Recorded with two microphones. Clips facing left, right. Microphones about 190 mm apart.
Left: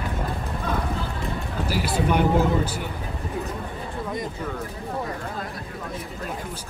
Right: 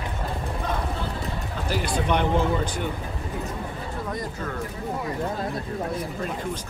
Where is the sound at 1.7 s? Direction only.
5° left (ahead or behind).